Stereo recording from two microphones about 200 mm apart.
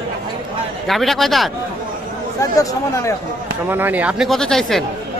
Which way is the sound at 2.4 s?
15° left (ahead or behind).